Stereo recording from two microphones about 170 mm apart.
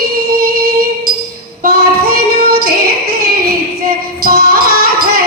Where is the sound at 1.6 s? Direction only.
60° right (ahead or behind).